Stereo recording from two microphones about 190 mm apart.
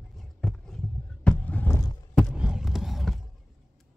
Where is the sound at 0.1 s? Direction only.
Centre (ahead or behind).